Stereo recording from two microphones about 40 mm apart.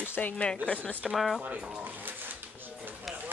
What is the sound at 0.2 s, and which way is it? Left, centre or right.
Speech, left.